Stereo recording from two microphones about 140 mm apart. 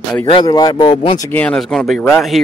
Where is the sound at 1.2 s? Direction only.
10° left (ahead or behind).